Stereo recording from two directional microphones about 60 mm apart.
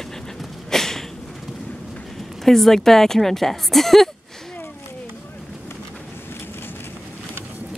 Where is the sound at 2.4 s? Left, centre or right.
Centre.